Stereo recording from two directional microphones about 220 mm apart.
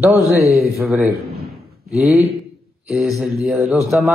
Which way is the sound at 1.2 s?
45° right (ahead or behind).